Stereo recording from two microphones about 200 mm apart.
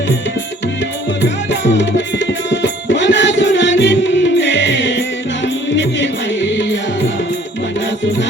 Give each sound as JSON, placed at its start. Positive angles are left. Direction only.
{"t": 1.2, "sound": "music", "side_deg": 60}